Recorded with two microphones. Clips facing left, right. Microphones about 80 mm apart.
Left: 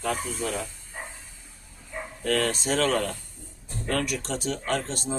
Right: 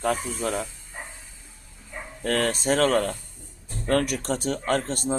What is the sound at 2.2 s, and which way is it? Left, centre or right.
Speech, right.